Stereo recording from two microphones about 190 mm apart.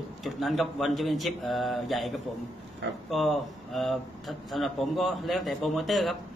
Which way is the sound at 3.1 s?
Centre (ahead or behind).